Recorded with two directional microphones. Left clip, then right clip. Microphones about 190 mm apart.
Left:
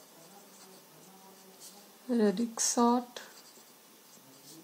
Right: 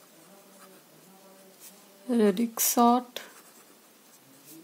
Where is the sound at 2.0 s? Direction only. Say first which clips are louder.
Right 5 dB; 60° right (ahead or behind).